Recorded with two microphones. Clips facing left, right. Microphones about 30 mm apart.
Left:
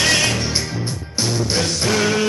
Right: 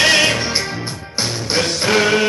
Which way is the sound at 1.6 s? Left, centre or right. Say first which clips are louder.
Right 5 dB; right.